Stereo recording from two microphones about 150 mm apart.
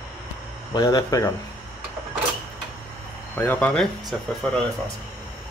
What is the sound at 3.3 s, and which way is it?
Speech, 10° left (ahead or behind).